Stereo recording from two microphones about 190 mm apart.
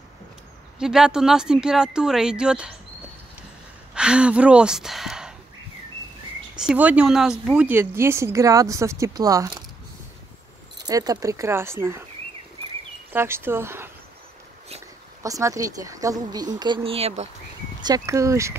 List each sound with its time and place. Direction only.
0.7 s speech: 5° right (ahead or behind)
3.9 s speech: 5° right (ahead or behind)
6.5 s speech: 5° right (ahead or behind)
10.9 s speech: 20° right (ahead or behind)
13.1 s speech: 10° right (ahead or behind)
15.2 s speech: 15° right (ahead or behind); by 17.3 s 35° right (ahead or behind)
17.8 s speech: 15° right (ahead or behind)